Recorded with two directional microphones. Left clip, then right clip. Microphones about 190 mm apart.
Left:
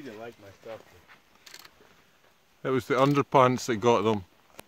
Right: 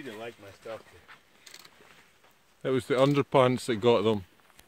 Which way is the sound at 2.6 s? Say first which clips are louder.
Left 1 dB; 5° left (ahead or behind).